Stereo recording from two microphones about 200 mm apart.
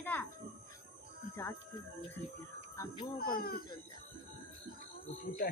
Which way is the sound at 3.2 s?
45° left (ahead or behind).